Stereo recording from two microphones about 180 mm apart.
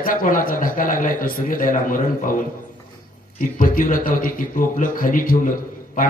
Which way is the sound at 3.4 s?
50° left (ahead or behind).